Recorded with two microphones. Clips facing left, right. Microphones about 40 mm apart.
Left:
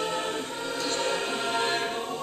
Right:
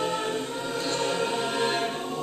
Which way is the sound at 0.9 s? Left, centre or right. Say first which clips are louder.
Right 3 dB; centre.